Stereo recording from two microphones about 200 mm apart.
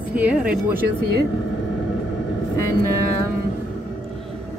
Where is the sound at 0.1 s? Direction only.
5° right (ahead or behind).